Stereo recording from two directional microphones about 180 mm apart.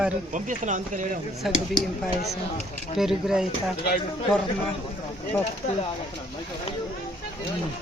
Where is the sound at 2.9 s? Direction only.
5° right (ahead or behind).